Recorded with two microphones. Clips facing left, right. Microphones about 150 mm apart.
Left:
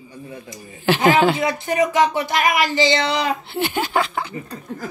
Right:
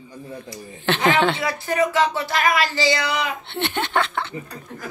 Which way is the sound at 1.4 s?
20° left (ahead or behind).